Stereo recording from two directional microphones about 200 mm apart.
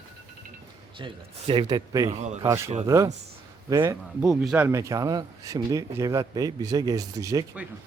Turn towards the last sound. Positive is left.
turn(degrees=-15)  # may be behind; listen again after turning